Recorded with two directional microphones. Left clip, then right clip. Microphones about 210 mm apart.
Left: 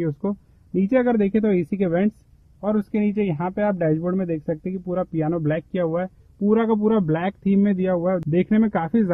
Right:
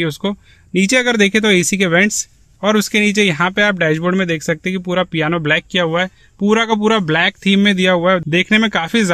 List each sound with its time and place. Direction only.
0.3 s a man's voice: 10° right (ahead or behind)